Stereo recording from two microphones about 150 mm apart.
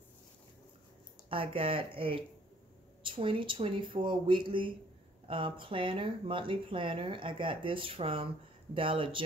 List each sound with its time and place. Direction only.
1.3 s speech: 35° right (ahead or behind)